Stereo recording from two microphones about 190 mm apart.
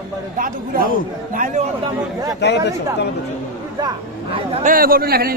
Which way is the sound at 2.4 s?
60° left (ahead or behind).